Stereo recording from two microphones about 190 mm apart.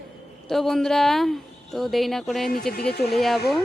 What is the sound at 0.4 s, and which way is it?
Speech, centre (ahead or behind).